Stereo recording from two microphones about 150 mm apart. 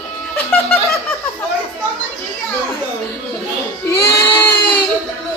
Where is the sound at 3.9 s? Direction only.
15° left (ahead or behind).